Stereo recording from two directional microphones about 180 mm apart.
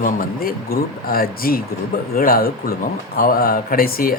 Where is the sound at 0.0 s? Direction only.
55° left (ahead or behind).